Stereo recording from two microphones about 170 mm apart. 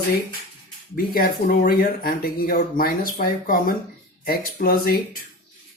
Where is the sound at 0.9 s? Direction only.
60° left (ahead or behind).